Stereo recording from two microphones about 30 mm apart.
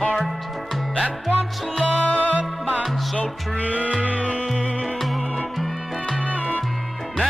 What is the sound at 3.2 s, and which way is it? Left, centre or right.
Music, left.